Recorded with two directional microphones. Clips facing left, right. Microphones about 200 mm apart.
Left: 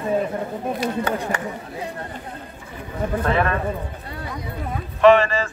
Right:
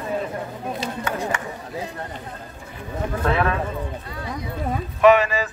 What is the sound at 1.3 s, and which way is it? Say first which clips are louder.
Speech: left 3 dB; 35° left (ahead or behind).